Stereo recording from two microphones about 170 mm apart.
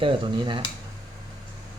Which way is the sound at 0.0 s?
30° right (ahead or behind).